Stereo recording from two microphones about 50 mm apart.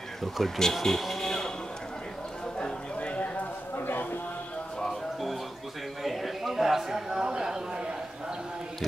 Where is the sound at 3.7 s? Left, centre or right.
Left.